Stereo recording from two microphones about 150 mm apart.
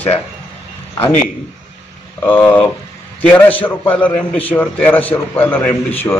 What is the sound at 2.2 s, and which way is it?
A man's voice, 10° left (ahead or behind).